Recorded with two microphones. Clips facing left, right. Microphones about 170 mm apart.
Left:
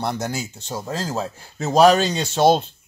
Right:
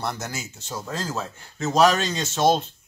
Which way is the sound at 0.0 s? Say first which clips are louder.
Left 5 dB; 30° left (ahead or behind).